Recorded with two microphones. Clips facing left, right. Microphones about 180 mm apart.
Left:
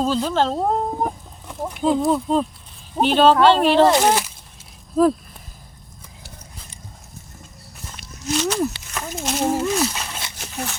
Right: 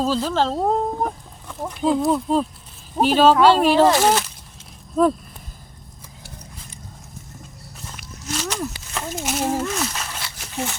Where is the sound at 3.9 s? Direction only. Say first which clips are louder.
Even; 15° left (ahead or behind).